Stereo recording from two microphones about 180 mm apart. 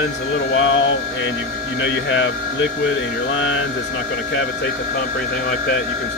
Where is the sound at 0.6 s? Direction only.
90° left.